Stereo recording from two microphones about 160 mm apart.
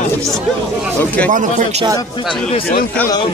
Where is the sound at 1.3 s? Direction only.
55° right (ahead or behind).